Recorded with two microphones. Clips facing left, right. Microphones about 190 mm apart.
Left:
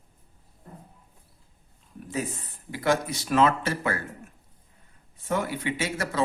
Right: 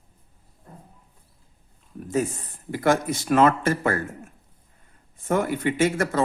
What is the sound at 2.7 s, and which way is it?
A man's voice, 50° right (ahead or behind).